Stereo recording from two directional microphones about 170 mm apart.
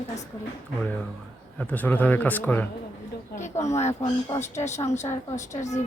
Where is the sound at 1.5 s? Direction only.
10° left (ahead or behind).